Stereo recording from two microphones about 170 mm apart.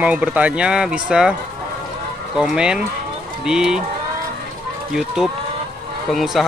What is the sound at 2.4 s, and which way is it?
Speech, 5° right (ahead or behind).